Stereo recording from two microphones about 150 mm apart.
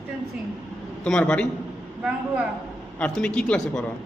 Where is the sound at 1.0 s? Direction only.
5° left (ahead or behind).